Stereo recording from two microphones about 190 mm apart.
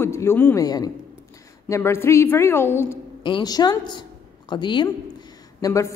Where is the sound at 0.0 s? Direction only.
15° left (ahead or behind).